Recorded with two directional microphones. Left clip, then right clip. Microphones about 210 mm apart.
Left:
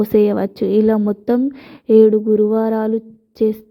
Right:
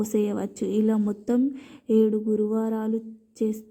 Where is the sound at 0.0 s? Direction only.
35° left (ahead or behind).